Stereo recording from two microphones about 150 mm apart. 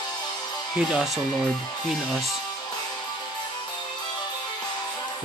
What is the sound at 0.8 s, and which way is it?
Speech, 5° right (ahead or behind).